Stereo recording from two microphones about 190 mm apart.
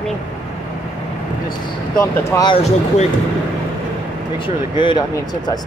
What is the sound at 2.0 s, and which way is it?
Speech, 20° left (ahead or behind).